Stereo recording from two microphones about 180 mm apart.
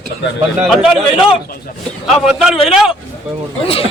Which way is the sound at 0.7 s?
5° right (ahead or behind).